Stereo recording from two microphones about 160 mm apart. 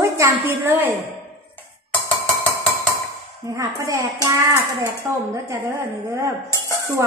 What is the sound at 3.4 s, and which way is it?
Speech, 20° right (ahead or behind).